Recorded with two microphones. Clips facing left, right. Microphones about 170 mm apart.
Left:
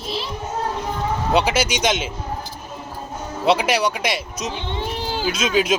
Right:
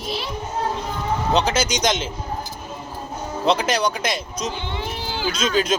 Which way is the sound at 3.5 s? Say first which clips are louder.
Left 2 dB; 5° left (ahead or behind).